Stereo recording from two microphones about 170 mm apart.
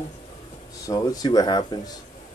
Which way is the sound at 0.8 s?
20° left (ahead or behind).